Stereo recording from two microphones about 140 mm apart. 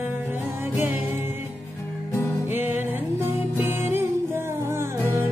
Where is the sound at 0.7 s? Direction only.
15° right (ahead or behind).